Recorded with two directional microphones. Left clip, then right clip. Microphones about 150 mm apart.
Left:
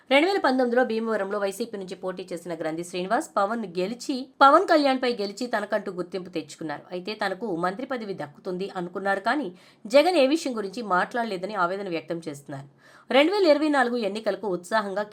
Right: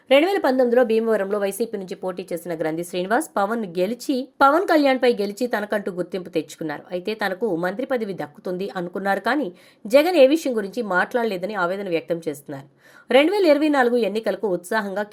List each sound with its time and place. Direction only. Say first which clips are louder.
0.1 s a woman's voice: right 4 dB; 15° right (ahead or behind)